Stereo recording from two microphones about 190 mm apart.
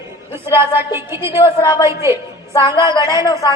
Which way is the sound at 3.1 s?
20° left (ahead or behind).